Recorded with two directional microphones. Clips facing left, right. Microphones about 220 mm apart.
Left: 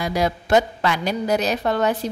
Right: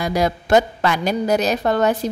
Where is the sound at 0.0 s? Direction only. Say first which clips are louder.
Right 2 dB; 45° right (ahead or behind).